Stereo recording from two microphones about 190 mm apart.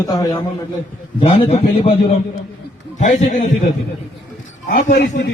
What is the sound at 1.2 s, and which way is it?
A man's voice, 30° left (ahead or behind).